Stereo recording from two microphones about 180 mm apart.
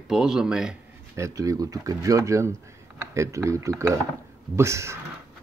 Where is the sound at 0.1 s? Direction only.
5° right (ahead or behind).